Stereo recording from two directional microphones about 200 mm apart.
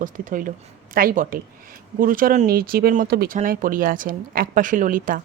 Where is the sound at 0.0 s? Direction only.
40° right (ahead or behind).